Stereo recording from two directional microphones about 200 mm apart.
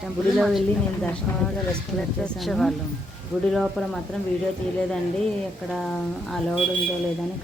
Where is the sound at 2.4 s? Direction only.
Centre (ahead or behind).